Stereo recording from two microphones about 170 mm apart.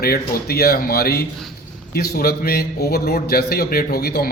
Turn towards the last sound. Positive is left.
turn(degrees=65)  # may be behind; listen again after turning